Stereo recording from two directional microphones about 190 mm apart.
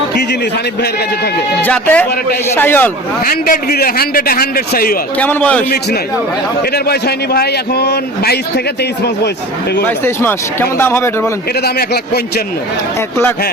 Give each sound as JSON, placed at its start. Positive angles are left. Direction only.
{"t": 0.1, "sound": "a sound", "side_deg": 60}
{"t": 1.6, "sound": "speech", "side_deg": 10}
{"t": 3.2, "sound": "a man's voice", "side_deg": 50}
{"t": 5.1, "sound": "speech", "side_deg": 10}
{"t": 6.6, "sound": "a man's voice", "side_deg": 55}
{"t": 9.8, "sound": "speech", "side_deg": 10}
{"t": 11.6, "sound": "a man's voice", "side_deg": 55}